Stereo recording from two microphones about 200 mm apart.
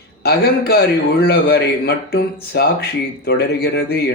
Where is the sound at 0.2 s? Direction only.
50° left (ahead or behind).